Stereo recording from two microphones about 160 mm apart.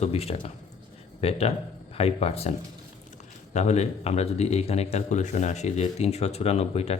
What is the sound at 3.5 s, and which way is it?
Speech, 45° left (ahead or behind).